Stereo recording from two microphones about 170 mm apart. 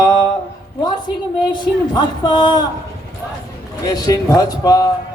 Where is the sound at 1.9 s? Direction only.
25° left (ahead or behind).